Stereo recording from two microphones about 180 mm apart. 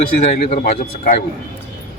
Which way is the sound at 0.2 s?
40° left (ahead or behind).